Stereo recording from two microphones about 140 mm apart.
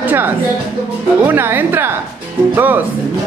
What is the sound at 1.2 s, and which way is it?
Speech, 15° right (ahead or behind).